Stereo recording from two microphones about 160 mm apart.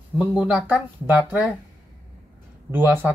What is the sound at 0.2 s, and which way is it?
Speech, 5° right (ahead or behind).